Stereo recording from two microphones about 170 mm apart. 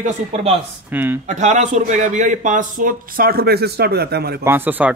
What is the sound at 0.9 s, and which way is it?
Speech, 10° right (ahead or behind).